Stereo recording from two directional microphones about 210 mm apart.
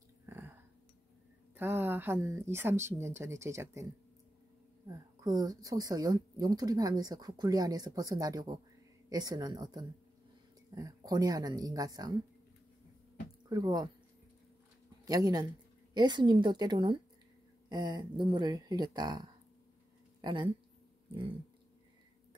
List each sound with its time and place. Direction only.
0.3 s a sound: 10° right (ahead or behind)
1.6 s speech: 10° right (ahead or behind)
4.8 s speech: 15° right (ahead or behind)
13.5 s speech: 20° right (ahead or behind)
15.0 s speech: 20° right (ahead or behind)
20.2 s a sound: 20° right (ahead or behind)